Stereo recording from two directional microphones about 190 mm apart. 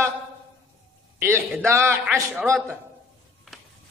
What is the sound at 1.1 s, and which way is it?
A man's voice, 15° right (ahead or behind).